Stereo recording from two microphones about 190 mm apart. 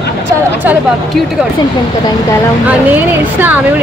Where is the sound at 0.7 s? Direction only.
10° right (ahead or behind).